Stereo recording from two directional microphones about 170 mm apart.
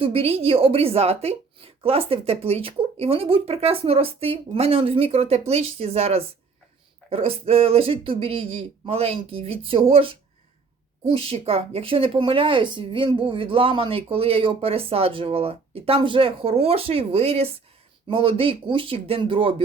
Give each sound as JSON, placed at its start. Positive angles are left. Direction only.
{"t": 0.0, "sound": "a woman's voice", "side_deg": -35}